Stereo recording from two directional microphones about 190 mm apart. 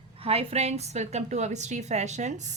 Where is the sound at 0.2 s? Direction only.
30° right (ahead or behind).